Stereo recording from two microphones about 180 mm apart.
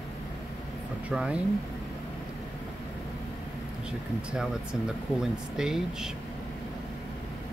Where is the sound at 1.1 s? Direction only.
5° right (ahead or behind).